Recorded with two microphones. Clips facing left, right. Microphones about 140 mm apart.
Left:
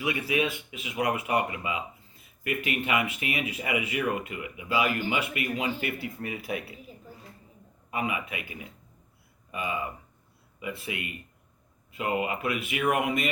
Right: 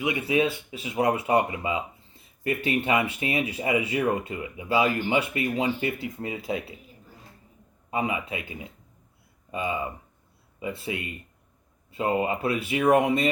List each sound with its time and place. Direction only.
0.0 s speech: 25° right (ahead or behind)
7.9 s speech: 25° right (ahead or behind)